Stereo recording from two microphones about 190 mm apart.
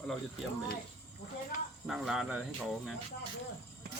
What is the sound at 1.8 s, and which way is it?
Speech, 5° right (ahead or behind).